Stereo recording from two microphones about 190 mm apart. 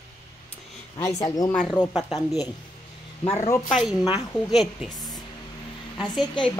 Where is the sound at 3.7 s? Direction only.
Centre (ahead or behind).